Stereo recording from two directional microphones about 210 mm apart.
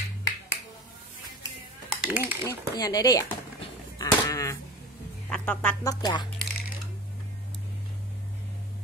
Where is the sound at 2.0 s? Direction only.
10° right (ahead or behind).